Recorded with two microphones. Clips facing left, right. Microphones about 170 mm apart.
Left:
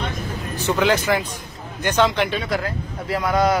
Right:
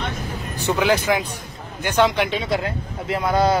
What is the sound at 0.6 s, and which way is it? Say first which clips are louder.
Speech: even; 15° right (ahead or behind).